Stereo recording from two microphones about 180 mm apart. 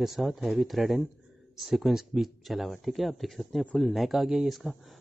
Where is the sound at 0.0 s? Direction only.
Centre (ahead or behind).